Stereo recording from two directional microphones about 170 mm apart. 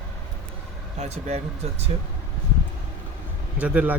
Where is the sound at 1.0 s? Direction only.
40° right (ahead or behind).